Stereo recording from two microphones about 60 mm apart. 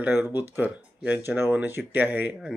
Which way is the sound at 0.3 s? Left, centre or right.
Right.